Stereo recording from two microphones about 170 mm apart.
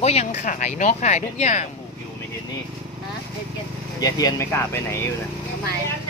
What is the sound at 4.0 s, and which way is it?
Speech, 20° left (ahead or behind).